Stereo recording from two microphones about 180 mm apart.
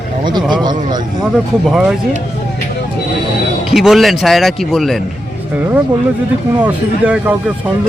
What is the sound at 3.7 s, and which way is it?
Speech, centre (ahead or behind).